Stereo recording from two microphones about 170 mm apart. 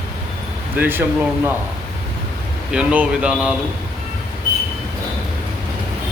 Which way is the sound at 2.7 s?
5° right (ahead or behind).